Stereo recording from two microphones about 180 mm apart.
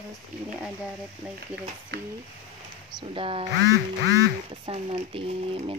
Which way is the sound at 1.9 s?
70° right (ahead or behind).